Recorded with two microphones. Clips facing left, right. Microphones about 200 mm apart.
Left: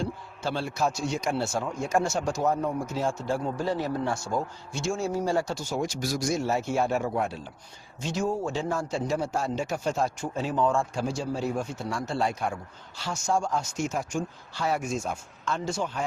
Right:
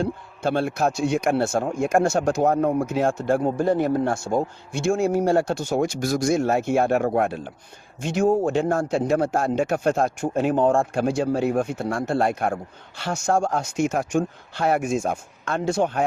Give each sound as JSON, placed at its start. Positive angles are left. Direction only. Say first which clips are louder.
{"t": 0.0, "sound": "a man's voice", "louder": "right 7 dB", "side_deg": -55}